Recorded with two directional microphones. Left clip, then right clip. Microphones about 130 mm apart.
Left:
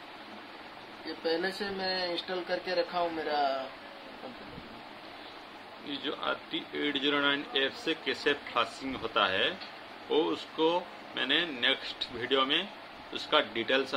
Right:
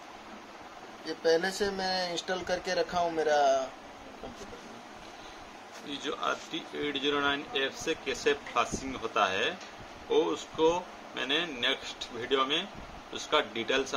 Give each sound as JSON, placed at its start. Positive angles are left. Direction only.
{"t": 1.2, "sound": "speech", "side_deg": -90}
{"t": 5.9, "sound": "speech", "side_deg": -5}